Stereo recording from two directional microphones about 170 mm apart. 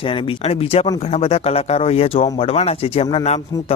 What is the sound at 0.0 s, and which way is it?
Speech, 30° left (ahead or behind).